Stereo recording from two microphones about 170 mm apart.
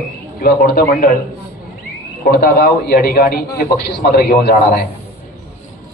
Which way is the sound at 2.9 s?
55° left (ahead or behind).